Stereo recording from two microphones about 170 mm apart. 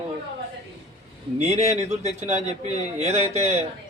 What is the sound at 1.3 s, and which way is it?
Speech, 40° right (ahead or behind).